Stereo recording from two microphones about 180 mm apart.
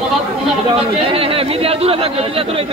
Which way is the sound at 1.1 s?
30° right (ahead or behind).